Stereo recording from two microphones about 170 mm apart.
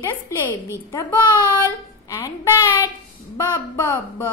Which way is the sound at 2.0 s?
15° left (ahead or behind).